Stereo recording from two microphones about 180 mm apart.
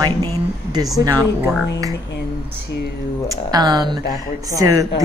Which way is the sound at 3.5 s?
20° right (ahead or behind).